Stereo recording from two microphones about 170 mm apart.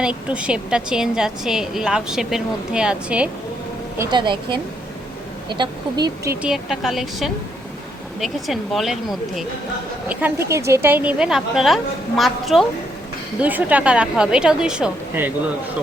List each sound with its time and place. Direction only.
0.0 s a woman's voice: 5° right (ahead or behind)
3.9 s a woman's voice: 15° right (ahead or behind)
4.2 s speech: 30° right (ahead or behind)
6.3 s a woman's voice: 5° right (ahead or behind)